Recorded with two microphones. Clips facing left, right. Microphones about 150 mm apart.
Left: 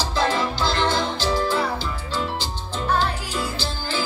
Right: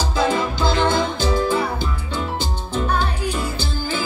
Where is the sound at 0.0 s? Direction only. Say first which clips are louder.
Right 2 dB; 50° right (ahead or behind).